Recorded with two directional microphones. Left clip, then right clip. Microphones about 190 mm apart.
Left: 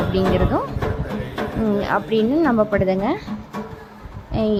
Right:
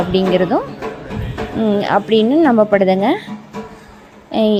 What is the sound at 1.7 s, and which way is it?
A woman's voice, 20° right (ahead or behind).